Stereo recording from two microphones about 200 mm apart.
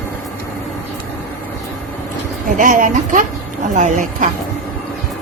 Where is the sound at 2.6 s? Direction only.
40° right (ahead or behind).